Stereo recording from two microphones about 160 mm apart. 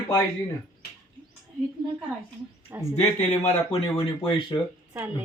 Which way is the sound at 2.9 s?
40° left (ahead or behind).